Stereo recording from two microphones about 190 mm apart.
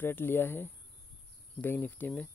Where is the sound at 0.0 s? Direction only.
10° left (ahead or behind).